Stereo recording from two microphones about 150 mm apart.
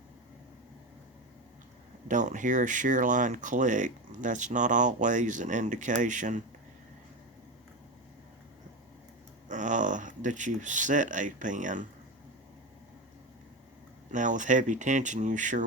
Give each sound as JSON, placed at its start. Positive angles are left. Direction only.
{"t": 2.0, "sound": "speech", "side_deg": -55}
{"t": 9.5, "sound": "speech", "side_deg": -55}
{"t": 14.1, "sound": "speech", "side_deg": -55}